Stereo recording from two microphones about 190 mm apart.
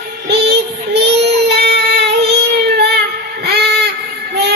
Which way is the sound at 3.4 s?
60° right (ahead or behind).